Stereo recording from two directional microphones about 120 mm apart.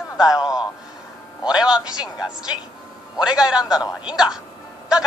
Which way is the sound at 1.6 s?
5° right (ahead or behind).